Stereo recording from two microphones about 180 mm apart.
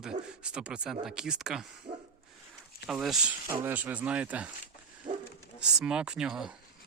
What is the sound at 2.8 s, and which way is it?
Speech, centre (ahead or behind).